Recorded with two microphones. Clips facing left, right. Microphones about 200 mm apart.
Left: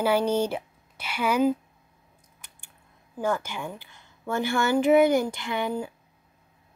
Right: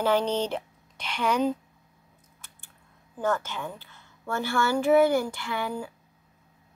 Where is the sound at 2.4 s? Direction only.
15° left (ahead or behind).